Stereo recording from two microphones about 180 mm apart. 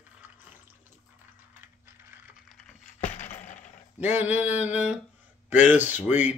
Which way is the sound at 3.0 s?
40° left (ahead or behind).